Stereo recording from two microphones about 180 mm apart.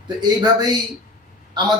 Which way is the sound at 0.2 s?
25° right (ahead or behind).